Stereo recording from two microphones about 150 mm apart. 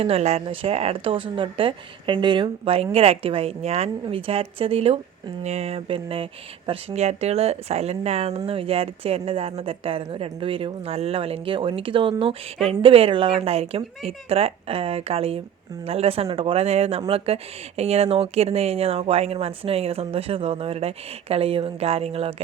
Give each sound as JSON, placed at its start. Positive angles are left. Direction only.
{"t": 0.0, "sound": "speech", "side_deg": -45}